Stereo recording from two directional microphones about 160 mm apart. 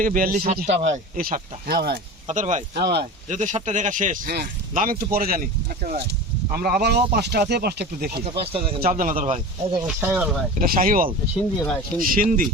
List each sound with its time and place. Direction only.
0.0 s speech: 60° right (ahead or behind)
0.8 s speech: 50° right (ahead or behind); by 2.0 s 80° right
2.2 s speech: 50° right (ahead or behind)
2.7 s speech: 90° right
3.2 s speech: 50° right (ahead or behind)
6.5 s speech: 70° right (ahead or behind)
8.2 s speech: 35° right (ahead or behind)
9.0 s speech: 55° right (ahead or behind)
10.0 s speech: 5° right (ahead or behind)
10.6 s speech: 60° right (ahead or behind)